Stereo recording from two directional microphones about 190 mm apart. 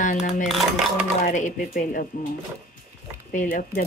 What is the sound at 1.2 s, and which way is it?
Speech, 40° left (ahead or behind).